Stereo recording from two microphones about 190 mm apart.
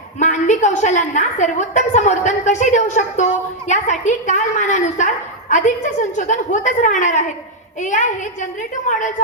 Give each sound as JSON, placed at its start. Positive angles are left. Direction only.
{"t": 0.2, "sound": "a woman's voice", "side_deg": 40}